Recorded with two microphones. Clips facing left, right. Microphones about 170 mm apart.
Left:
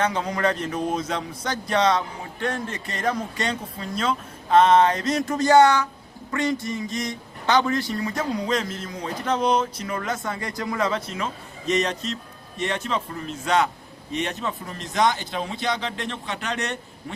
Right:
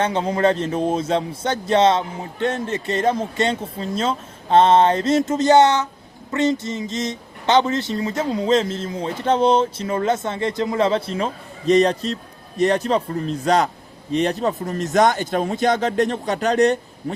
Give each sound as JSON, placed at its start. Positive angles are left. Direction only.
{"t": 0.0, "sound": "speech", "side_deg": -30}